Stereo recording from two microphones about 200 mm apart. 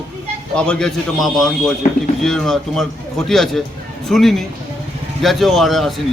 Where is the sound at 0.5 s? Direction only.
5° left (ahead or behind).